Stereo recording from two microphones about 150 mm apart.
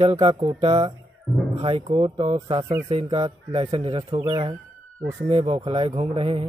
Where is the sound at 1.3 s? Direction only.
Centre (ahead or behind).